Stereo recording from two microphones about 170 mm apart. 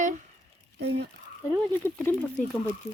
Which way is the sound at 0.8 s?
85° right.